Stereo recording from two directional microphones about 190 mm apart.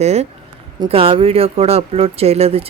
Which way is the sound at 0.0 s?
35° right (ahead or behind).